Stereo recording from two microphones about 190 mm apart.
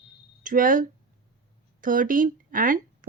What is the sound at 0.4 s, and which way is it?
Speech, 45° right (ahead or behind).